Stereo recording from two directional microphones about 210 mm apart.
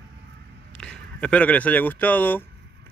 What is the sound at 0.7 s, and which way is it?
Speech, 5° left (ahead or behind).